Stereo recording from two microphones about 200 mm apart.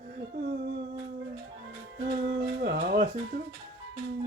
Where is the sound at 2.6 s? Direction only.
45° right (ahead or behind).